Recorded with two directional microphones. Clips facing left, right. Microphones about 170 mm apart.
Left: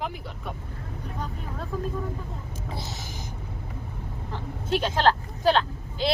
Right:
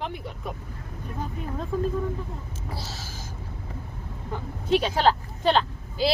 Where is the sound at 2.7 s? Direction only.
20° left (ahead or behind).